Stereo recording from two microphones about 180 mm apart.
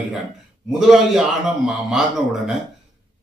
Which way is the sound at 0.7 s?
Centre (ahead or behind).